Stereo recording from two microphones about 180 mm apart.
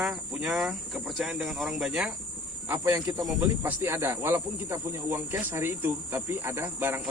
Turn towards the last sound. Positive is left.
turn(degrees=-10)  # may be behind; listen again after turning